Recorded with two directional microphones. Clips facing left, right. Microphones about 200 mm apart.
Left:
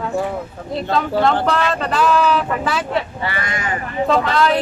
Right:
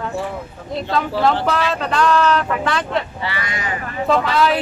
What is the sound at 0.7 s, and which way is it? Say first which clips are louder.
Speech: left 2 dB; centre (ahead or behind).